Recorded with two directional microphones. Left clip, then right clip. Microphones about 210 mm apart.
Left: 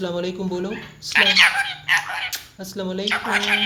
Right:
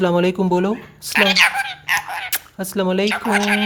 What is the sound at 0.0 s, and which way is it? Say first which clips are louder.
Speech: right 9 dB; 45° right (ahead or behind).